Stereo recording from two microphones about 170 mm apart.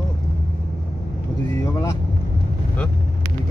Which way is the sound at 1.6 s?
20° left (ahead or behind).